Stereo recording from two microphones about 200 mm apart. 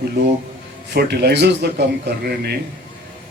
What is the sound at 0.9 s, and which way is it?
Speech, 55° right (ahead or behind).